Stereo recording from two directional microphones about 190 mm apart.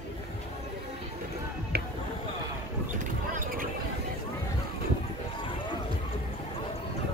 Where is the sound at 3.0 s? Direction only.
45° right (ahead or behind).